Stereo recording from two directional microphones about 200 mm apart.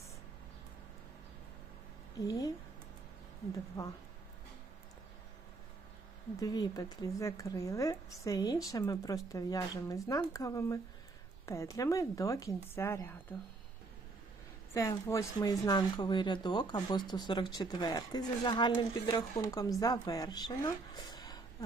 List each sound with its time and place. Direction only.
2.1 s a woman's voice: 20° left (ahead or behind)
6.4 s a woman's voice: 20° left (ahead or behind)
14.7 s speech: 15° left (ahead or behind)